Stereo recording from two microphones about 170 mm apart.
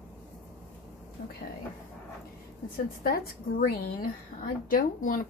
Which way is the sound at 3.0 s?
65° left (ahead or behind).